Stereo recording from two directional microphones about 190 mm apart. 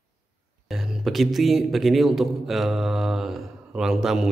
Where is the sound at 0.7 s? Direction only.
Centre (ahead or behind).